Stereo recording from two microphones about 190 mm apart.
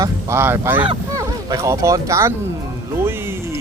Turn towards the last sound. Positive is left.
turn(degrees=-10)  # may be behind; listen again after turning